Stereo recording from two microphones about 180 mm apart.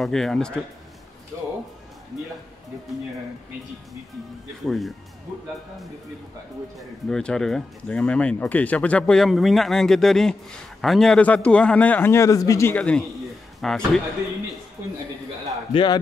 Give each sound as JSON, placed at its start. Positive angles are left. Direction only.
{"t": 0.0, "sound": "a man's voice", "side_deg": 0}
{"t": 4.6, "sound": "a man's voice", "side_deg": 0}
{"t": 7.1, "sound": "a man's voice", "side_deg": 5}
{"t": 15.7, "sound": "a man's voice", "side_deg": 25}